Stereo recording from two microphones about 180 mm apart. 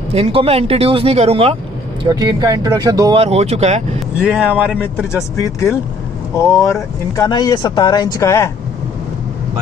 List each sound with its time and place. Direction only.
0.1 s speech: 30° right (ahead or behind)
2.0 s speech: 20° right (ahead or behind)
3.2 s speech: 35° right (ahead or behind)
4.2 s speech: 5° right (ahead or behind)
5.1 s speech: 15° left (ahead or behind)